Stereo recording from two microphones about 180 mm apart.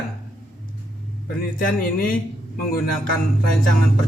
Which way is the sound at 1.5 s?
50° left (ahead or behind).